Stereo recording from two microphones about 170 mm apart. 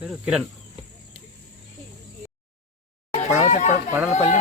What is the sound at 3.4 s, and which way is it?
Speech, 45° left (ahead or behind).